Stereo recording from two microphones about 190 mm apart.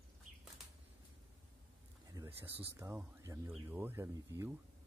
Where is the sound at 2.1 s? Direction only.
15° right (ahead or behind).